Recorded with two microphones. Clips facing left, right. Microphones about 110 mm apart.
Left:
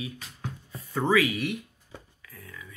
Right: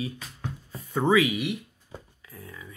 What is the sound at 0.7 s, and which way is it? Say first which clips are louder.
Speech: right 2 dB; 20° right (ahead or behind).